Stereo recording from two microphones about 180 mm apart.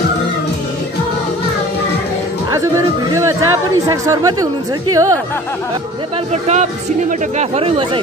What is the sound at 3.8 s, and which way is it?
Speech, 20° right (ahead or behind).